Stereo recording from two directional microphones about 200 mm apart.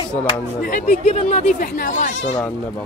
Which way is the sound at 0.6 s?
45° left (ahead or behind).